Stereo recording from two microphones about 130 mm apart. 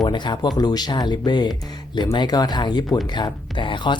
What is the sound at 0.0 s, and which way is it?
Speech, 35° left (ahead or behind).